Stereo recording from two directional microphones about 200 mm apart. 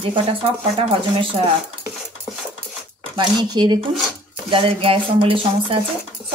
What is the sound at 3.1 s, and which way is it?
Speech, 20° right (ahead or behind).